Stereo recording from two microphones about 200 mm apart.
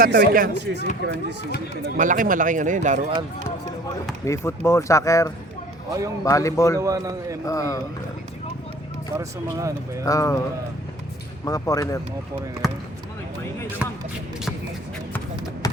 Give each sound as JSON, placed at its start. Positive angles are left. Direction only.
{"t": 0.0, "sound": "speech", "side_deg": -50}
{"t": 2.0, "sound": "a man's voice", "side_deg": -40}
{"t": 4.3, "sound": "speech", "side_deg": 15}
{"t": 6.7, "sound": "a man's voice", "side_deg": -15}
{"t": 7.4, "sound": "speech", "side_deg": 15}
{"t": 9.1, "sound": "a man's voice", "side_deg": -15}
{"t": 10.1, "sound": "speech", "side_deg": 15}
{"t": 11.4, "sound": "speech", "side_deg": 15}
{"t": 15.6, "sound": "a sound", "side_deg": 15}